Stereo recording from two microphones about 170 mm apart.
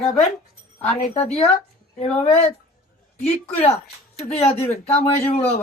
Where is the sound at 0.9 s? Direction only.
35° left (ahead or behind).